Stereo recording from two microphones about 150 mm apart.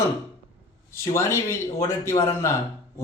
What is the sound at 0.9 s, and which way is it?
A man's voice, 15° left (ahead or behind).